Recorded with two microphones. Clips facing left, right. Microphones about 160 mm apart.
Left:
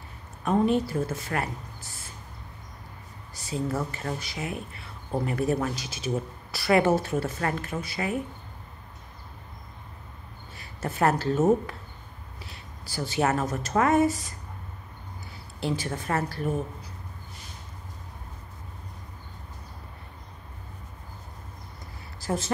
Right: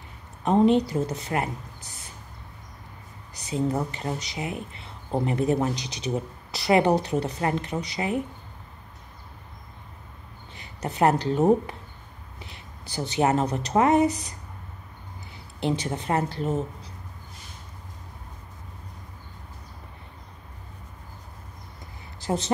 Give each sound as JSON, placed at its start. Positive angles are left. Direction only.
{"t": 0.4, "sound": "speech", "side_deg": -20}
{"t": 3.3, "sound": "speech", "side_deg": -20}
{"t": 10.5, "sound": "speech", "side_deg": -20}
{"t": 15.6, "sound": "speech", "side_deg": -20}
{"t": 22.2, "sound": "speech", "side_deg": -20}